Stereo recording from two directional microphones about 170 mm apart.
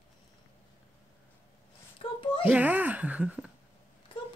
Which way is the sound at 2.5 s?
10° right (ahead or behind).